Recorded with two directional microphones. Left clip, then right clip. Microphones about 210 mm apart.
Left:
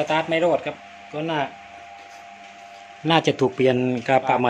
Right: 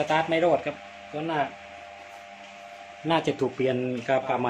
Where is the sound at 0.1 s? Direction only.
20° left (ahead or behind).